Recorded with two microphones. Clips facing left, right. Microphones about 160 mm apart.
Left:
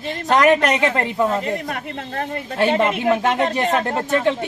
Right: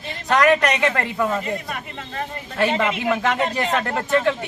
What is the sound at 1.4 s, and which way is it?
Speech, 65° left (ahead or behind).